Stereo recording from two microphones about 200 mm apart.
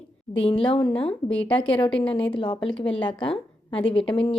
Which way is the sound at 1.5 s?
25° left (ahead or behind).